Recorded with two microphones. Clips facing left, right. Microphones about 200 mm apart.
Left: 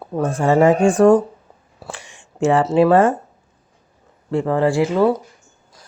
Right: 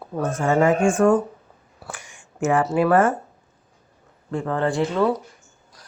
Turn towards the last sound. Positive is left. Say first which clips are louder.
# left 5 dB
turn(degrees=10)  # may be behind; listen again after turning